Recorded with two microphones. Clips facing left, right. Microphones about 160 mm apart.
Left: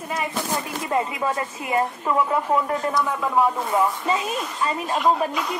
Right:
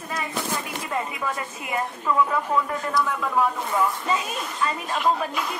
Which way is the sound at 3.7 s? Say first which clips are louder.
Left 2 dB; 25° left (ahead or behind).